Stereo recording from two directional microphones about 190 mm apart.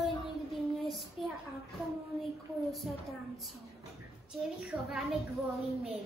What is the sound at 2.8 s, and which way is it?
Speech, centre (ahead or behind).